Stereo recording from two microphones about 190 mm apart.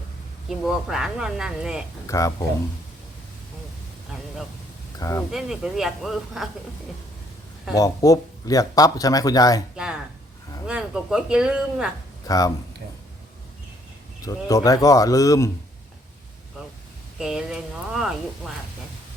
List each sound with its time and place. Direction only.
0.4 s speech: centre (ahead or behind)
2.0 s speech: 15° left (ahead or behind)
4.9 s speech: 15° left (ahead or behind)
5.3 s speech: centre (ahead or behind)
7.8 s speech: 20° left (ahead or behind)
9.7 s speech: 5° right (ahead or behind)
12.2 s speech: 20° left (ahead or behind)
14.3 s speech: 20° left (ahead or behind)
17.2 s speech: 5° right (ahead or behind)